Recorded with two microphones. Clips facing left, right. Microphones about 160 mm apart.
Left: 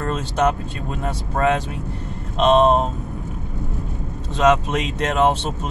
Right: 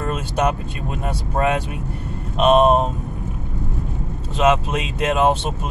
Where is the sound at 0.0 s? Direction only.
15° right (ahead or behind).